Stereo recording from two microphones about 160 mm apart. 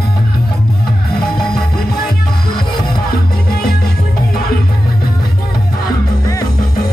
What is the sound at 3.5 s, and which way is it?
Music, 70° left (ahead or behind).